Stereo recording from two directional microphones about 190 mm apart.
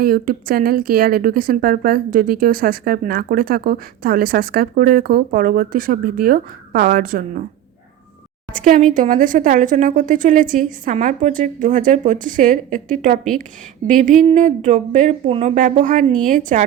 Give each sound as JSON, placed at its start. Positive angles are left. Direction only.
{"t": 0.0, "sound": "a woman's voice", "side_deg": -50}
{"t": 8.5, "sound": "a woman's voice", "side_deg": -45}